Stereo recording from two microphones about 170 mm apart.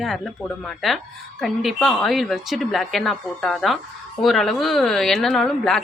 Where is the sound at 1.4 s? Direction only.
Centre (ahead or behind).